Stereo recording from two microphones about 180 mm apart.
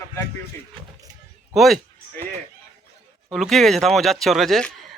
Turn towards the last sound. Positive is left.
turn(degrees=0)  # may be behind; listen again after turning